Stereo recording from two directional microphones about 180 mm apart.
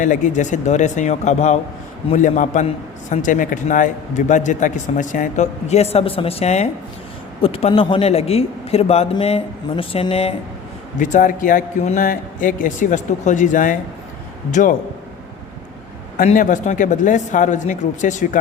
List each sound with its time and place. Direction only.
0.0 s a man's voice: 45° left (ahead or behind)
10.9 s a man's voice: 45° left (ahead or behind)
16.1 s a man's voice: 50° left (ahead or behind)